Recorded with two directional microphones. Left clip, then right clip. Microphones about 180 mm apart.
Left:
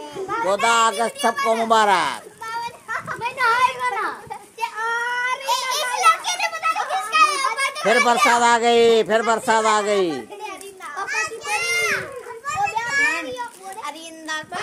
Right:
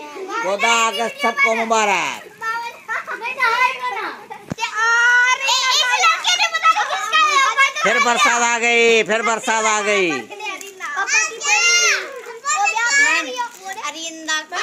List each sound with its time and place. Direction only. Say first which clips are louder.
0.5 s a child's voice: right 1 dB; 5° right (ahead or behind)
2.4 s children playing: right 5 dB; 30° left (ahead or behind)
3.2 s children playing: right 1 dB; 15° left (ahead or behind)
7.8 s speech: left 4 dB; 10° right (ahead or behind)
11.1 s children playing: right 7 dB; 25° right (ahead or behind)
12.5 s children playing: right 4 dB; 15° left (ahead or behind)
12.8 s children playing: right 5 dB; 25° right (ahead or behind)
13.8 s child singing: right 6 dB; 60° left (ahead or behind)